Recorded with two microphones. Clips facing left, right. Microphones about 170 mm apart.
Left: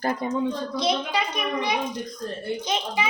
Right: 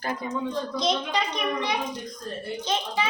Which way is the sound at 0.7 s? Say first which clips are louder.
Left 1 dB; centre (ahead or behind).